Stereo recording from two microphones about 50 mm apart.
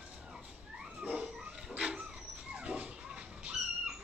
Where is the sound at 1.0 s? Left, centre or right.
Right.